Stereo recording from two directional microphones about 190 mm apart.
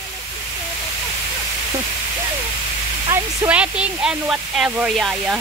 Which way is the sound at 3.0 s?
15° right (ahead or behind).